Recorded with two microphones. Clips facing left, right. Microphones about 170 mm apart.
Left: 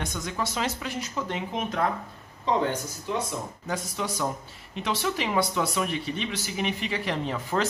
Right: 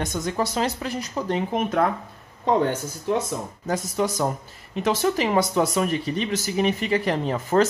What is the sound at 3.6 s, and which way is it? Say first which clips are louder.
Speech: right 8 dB; 40° right (ahead or behind).